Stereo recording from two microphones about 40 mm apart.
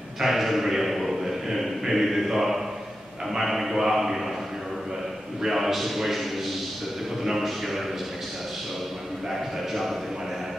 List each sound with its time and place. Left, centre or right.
0.2 s a sound: centre
5.4 s a man's voice: centre
7.2 s a man's voice: centre
9.7 s a man's voice: centre